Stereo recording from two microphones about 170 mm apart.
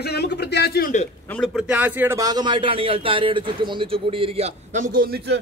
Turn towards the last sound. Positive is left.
turn(degrees=-60)  # may be behind; listen again after turning